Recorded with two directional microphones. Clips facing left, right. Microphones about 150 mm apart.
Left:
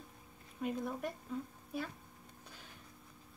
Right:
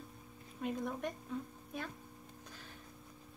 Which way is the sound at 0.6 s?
Centre (ahead or behind).